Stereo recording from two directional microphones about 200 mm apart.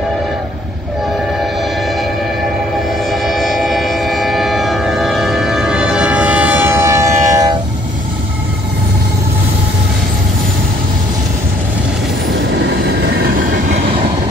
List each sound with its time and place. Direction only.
3.1 s train: centre (ahead or behind); by 7.5 s 15° right (ahead or behind)
12.4 s train: 60° right (ahead or behind)